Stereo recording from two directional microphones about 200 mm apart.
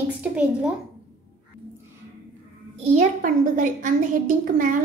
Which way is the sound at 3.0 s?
40° right (ahead or behind).